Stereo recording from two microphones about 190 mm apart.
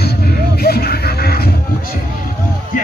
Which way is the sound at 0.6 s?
55° left (ahead or behind).